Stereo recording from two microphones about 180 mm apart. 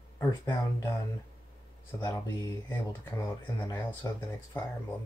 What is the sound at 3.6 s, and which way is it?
Speech, 15° left (ahead or behind).